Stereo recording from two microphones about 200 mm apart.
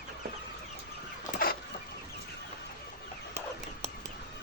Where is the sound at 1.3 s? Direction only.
45° left (ahead or behind).